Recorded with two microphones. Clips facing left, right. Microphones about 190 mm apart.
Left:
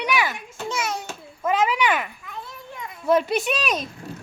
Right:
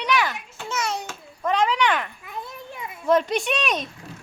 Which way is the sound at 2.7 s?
10° right (ahead or behind).